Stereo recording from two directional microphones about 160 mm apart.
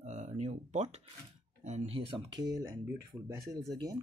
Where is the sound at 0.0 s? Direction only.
50° right (ahead or behind).